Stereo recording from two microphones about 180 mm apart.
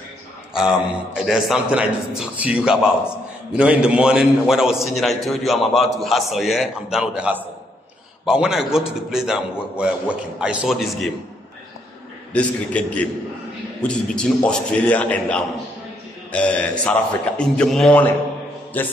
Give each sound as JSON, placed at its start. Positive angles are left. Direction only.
{"t": 0.6, "sound": "a man's voice", "side_deg": 0}
{"t": 12.3, "sound": "a man's voice", "side_deg": 5}